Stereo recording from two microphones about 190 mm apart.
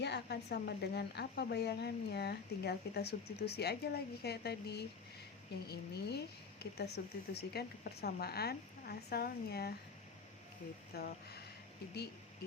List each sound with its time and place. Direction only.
0.0 s speech: 60° left (ahead or behind)
10.9 s speech: 55° left (ahead or behind)